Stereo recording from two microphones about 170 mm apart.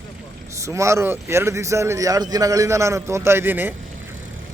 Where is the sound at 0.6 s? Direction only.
15° right (ahead or behind).